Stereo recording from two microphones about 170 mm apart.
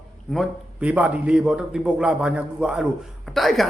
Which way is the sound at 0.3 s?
10° right (ahead or behind).